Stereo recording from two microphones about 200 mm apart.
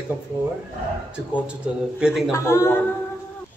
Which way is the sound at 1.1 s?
5° right (ahead or behind).